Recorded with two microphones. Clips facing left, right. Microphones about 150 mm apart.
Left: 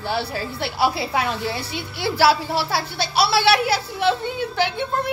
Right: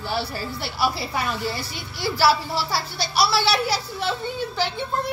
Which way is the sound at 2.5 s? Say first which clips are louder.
Left 3 dB; 60° left (ahead or behind).